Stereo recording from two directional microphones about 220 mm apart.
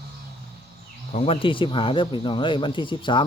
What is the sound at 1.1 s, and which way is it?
Speech, 25° left (ahead or behind).